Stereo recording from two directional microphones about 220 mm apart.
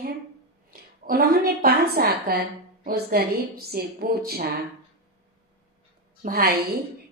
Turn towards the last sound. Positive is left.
turn(degrees=-45)  # may be behind; listen again after turning